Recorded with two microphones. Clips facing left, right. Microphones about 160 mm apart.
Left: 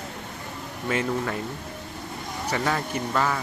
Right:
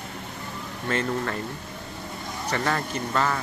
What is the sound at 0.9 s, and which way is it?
Speech, 10° left (ahead or behind).